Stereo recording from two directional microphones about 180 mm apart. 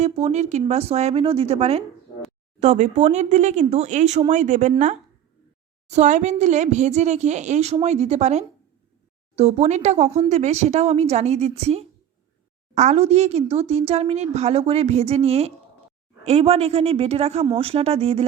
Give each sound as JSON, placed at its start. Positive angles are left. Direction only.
{"t": 0.0, "sound": "speech", "side_deg": -40}